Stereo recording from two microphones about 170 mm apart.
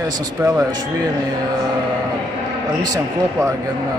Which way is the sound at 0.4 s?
15° right (ahead or behind).